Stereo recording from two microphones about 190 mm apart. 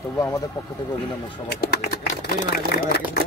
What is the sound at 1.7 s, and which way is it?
Speech, 55° left (ahead or behind).